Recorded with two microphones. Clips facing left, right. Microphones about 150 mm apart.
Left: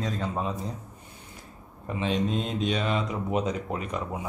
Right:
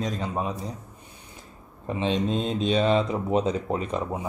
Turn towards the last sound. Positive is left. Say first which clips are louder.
# right 4 dB
turn(degrees=-25)  # may be behind; listen again after turning